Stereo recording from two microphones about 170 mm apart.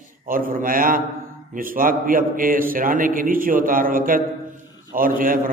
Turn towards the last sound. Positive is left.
turn(degrees=-55)  # may be behind; listen again after turning